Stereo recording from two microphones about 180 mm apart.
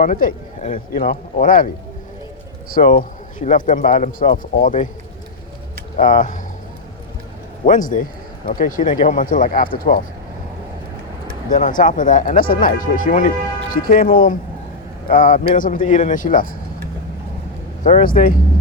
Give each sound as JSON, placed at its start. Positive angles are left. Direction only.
{"t": 0.0, "sound": "speech", "side_deg": 45}
{"t": 6.0, "sound": "speech", "side_deg": 45}
{"t": 7.6, "sound": "speech", "side_deg": 45}
{"t": 11.4, "sound": "speech", "side_deg": 45}
{"t": 17.8, "sound": "speech", "side_deg": 50}